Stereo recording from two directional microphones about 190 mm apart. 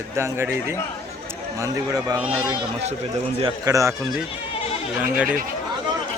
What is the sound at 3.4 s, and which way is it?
Speech, 15° right (ahead or behind).